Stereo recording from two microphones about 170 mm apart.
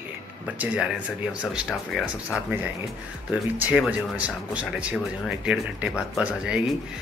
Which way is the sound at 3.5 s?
5° right (ahead or behind).